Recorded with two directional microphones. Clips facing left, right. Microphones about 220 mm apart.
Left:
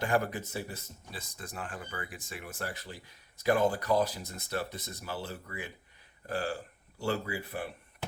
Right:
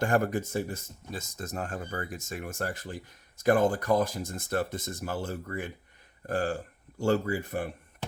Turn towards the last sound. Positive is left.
turn(degrees=-45)  # may be behind; listen again after turning